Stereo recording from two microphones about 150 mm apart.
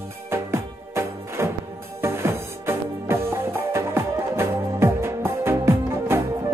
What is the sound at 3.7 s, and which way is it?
Music, 15° right (ahead or behind).